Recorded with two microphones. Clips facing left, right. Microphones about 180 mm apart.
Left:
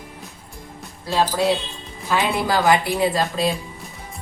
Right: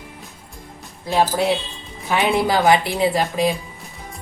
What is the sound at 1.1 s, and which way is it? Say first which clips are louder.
A woman's voice: right 1 dB; 20° right (ahead or behind).